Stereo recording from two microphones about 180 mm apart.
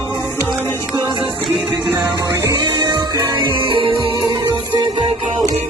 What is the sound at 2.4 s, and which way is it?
Music, 25° right (ahead or behind).